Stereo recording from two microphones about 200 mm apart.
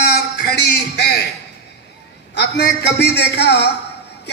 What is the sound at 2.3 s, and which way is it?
A man's voice, 55° left (ahead or behind).